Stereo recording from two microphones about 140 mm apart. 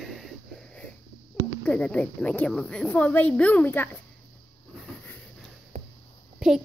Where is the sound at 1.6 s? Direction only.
10° left (ahead or behind).